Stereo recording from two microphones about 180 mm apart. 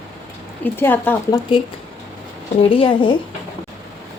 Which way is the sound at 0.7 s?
10° left (ahead or behind).